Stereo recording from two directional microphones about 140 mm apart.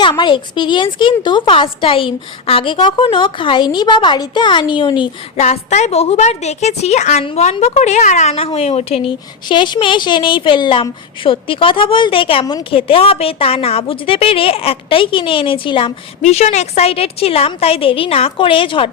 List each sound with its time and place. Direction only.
0.0 s a woman's voice: 35° left (ahead or behind)
5.4 s a woman's voice: 55° left (ahead or behind)
8.4 s a woman's voice: 45° left (ahead or behind)
16.2 s a woman's voice: 50° left (ahead or behind)